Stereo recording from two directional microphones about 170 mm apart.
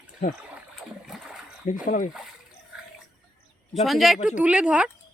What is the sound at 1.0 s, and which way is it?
Splash, 5° right (ahead or behind).